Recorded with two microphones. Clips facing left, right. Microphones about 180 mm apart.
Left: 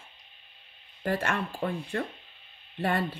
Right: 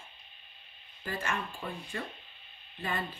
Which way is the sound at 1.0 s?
65° left (ahead or behind).